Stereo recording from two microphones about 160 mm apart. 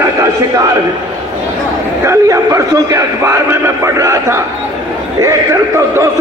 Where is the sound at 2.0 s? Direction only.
20° right (ahead or behind).